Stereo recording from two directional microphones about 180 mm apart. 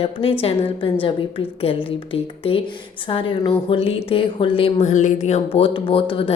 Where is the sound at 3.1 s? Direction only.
30° left (ahead or behind).